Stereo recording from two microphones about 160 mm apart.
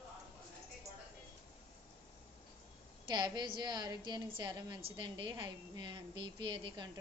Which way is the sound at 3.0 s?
25° right (ahead or behind).